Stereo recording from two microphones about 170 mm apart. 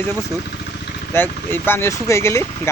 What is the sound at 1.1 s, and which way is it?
Speech, 10° left (ahead or behind).